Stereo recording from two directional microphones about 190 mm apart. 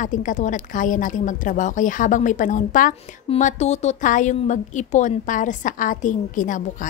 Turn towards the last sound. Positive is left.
turn(degrees=40)  # may be behind; listen again after turning